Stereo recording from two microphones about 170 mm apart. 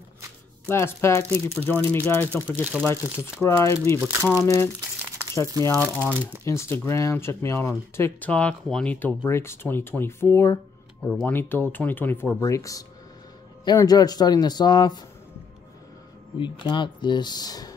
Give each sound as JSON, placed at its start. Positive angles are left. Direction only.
{"t": 0.7, "sound": "speech", "side_deg": 15}
{"t": 4.9, "sound": "crumpling", "side_deg": -10}
{"t": 5.6, "sound": "a man's voice", "side_deg": 15}
{"t": 16.3, "sound": "a man's voice", "side_deg": 30}